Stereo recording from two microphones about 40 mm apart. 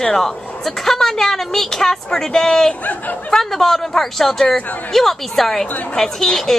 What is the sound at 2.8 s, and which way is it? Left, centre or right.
Speech, left.